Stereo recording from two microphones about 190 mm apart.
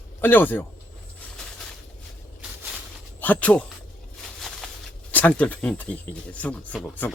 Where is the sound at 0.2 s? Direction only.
10° left (ahead or behind).